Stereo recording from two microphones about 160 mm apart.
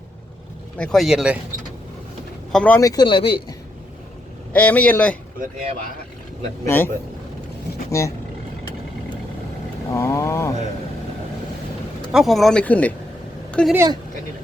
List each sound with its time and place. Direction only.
0.8 s speech: 5° left (ahead or behind)
2.5 s speech: 10° left (ahead or behind)
2.8 s speech: 25° left (ahead or behind)
4.5 s speech: 10° left (ahead or behind)
6.7 s speech: 15° left (ahead or behind)
9.9 s speech: 20° left (ahead or behind)
12.1 s speech: centre (ahead or behind)